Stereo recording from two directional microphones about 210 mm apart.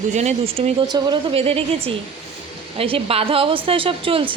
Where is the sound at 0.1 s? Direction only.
35° right (ahead or behind).